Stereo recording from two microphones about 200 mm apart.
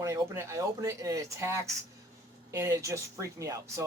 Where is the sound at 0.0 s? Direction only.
15° right (ahead or behind).